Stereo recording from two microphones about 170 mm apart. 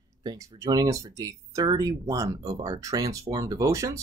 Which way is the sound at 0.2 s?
20° right (ahead or behind).